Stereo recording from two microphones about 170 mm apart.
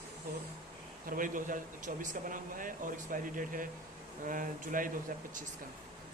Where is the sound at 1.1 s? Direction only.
50° right (ahead or behind).